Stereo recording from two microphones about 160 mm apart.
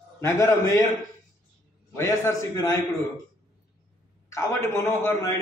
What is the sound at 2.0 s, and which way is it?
Speech, 20° left (ahead or behind).